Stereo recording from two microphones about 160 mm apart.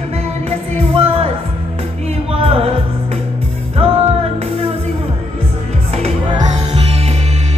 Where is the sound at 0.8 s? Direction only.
35° right (ahead or behind).